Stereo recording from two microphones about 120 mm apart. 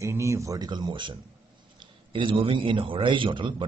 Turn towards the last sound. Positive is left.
turn(degrees=-45)  # may be behind; listen again after turning